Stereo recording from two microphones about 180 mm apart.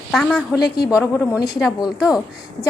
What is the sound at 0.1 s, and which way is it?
Speech, 5° left (ahead or behind).